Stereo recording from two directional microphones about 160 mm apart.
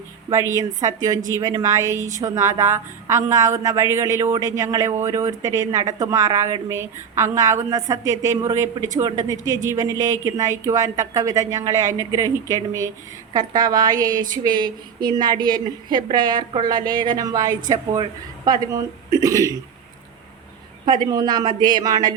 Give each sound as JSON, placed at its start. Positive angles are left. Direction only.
{"t": 0.3, "sound": "a woman's voice", "side_deg": -20}
{"t": 2.0, "sound": "a woman's voice", "side_deg": -50}
{"t": 2.2, "sound": "a woman's voice", "side_deg": -20}
{"t": 20.8, "sound": "a woman's voice", "side_deg": -30}